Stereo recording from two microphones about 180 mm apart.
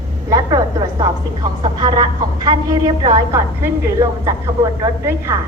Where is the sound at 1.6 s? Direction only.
25° right (ahead or behind).